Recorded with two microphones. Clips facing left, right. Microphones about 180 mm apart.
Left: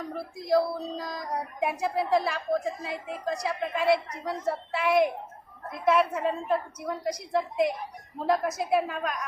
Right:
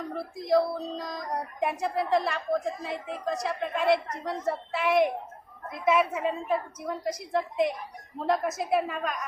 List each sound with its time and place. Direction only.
0.3 s a woman's voice: centre (ahead or behind)